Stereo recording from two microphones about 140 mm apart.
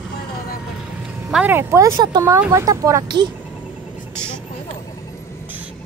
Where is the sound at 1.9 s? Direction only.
30° right (ahead or behind).